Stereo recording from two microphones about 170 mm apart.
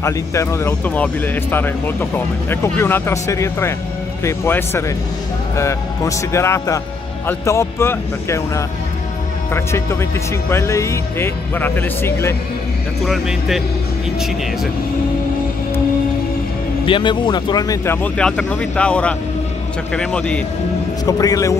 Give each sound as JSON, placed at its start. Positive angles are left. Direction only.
{"t": 0.0, "sound": "speech", "side_deg": 15}
{"t": 13.0, "sound": "speech", "side_deg": 0}
{"t": 16.8, "sound": "speech", "side_deg": 30}
{"t": 18.0, "sound": "speech", "side_deg": 5}
{"t": 21.0, "sound": "speech", "side_deg": 20}